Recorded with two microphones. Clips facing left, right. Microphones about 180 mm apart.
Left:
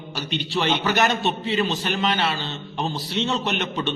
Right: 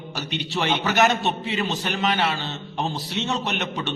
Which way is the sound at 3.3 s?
Centre (ahead or behind).